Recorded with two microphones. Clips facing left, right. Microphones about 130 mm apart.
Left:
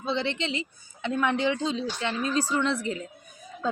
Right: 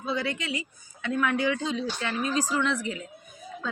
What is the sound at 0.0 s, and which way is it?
A woman's voice, 25° left (ahead or behind).